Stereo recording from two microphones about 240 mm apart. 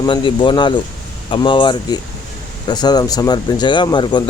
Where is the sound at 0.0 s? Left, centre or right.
Centre.